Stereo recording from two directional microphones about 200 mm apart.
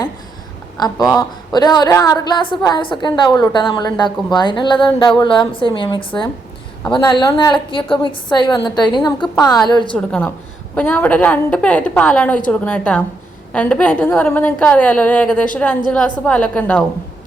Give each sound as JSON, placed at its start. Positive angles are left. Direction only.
{"t": 0.8, "sound": "a woman's voice", "side_deg": 20}
{"t": 9.9, "sound": "a woman's voice", "side_deg": 5}